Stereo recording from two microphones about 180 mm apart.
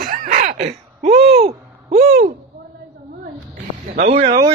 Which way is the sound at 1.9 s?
55° right (ahead or behind).